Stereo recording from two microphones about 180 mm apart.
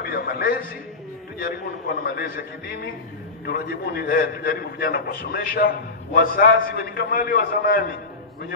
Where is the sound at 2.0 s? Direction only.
55° left (ahead or behind).